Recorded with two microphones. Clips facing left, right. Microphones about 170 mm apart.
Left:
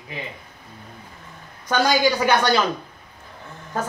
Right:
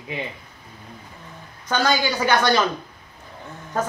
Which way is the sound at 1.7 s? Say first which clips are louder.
Left 2 dB; 10° left (ahead or behind).